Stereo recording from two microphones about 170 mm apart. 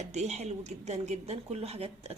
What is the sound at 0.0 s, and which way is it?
A woman's voice, 40° right (ahead or behind).